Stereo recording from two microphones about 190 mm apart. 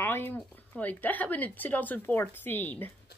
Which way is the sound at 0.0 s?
10° left (ahead or behind).